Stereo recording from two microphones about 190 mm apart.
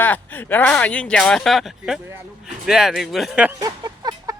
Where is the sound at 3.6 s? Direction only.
20° right (ahead or behind).